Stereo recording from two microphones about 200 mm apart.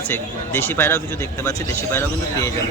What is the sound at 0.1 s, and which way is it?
Speech, 10° left (ahead or behind).